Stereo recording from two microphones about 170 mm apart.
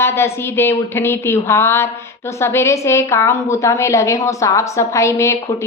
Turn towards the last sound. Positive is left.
turn(degrees=15)  # may be behind; listen again after turning